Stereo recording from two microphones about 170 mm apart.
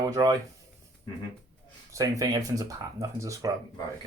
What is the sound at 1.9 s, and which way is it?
Speech, 20° right (ahead or behind).